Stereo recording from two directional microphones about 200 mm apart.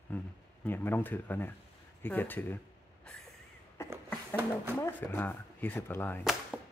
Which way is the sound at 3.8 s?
10° right (ahead or behind).